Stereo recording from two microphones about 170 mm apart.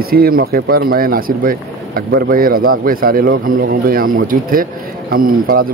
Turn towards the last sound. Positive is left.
turn(degrees=-55)  # may be behind; listen again after turning